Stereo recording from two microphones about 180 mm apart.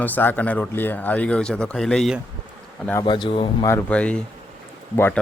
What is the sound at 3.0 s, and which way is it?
Speech, 30° left (ahead or behind).